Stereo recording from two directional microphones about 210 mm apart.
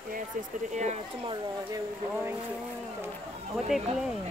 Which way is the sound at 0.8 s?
35° right (ahead or behind).